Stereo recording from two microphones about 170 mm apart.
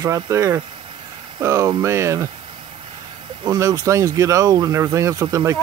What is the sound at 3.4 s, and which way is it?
Speech, 20° right (ahead or behind).